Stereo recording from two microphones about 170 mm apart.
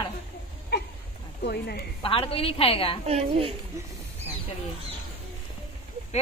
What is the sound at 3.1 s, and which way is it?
Speech, 35° right (ahead or behind).